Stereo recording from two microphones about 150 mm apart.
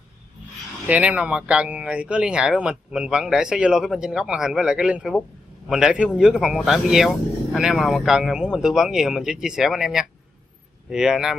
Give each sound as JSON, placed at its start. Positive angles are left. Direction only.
{"t": 0.8, "sound": "speech", "side_deg": -10}